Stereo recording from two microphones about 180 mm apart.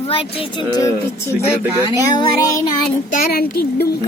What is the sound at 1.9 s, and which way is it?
Child singing, 20° left (ahead or behind).